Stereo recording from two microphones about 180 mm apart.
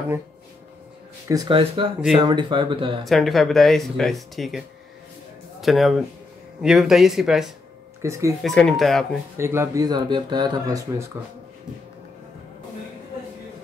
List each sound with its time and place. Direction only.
1.3 s speech: 20° right (ahead or behind)
3.1 s speech: centre (ahead or behind)
8.0 s speech: 15° right (ahead or behind)
8.4 s speech: centre (ahead or behind)
9.4 s speech: 15° right (ahead or behind)